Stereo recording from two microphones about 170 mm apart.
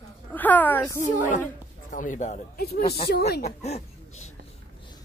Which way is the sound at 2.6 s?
70° left (ahead or behind).